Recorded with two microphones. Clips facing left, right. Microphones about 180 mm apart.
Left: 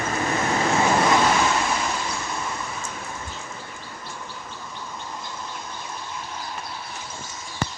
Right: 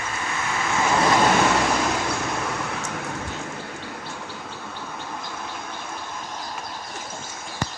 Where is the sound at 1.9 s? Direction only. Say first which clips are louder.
Right 4 dB; 70° right (ahead or behind).